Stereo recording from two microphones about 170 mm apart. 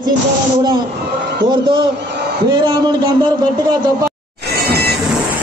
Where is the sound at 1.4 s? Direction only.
30° right (ahead or behind).